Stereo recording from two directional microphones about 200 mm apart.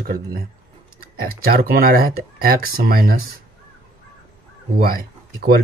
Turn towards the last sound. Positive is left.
turn(degrees=-50)  # may be behind; listen again after turning